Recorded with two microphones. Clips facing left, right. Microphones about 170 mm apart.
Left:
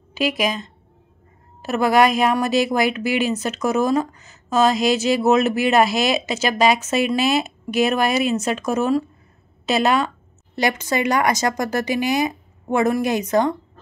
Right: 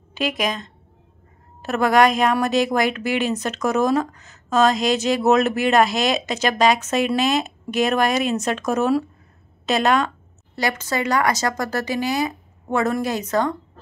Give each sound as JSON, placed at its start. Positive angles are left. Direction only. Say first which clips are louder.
{"t": 0.1, "sound": "speech", "louder": "left 2 dB", "side_deg": 5}
{"t": 10.5, "sound": "speech", "louder": "left 3 dB", "side_deg": 20}